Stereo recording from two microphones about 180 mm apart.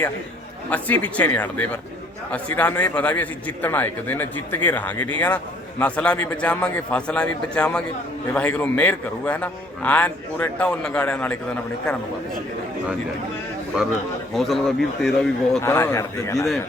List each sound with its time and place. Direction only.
0.7 s a man's voice: 10° left (ahead or behind)
14.3 s a man's voice: centre (ahead or behind)
15.6 s a man's voice: 15° left (ahead or behind)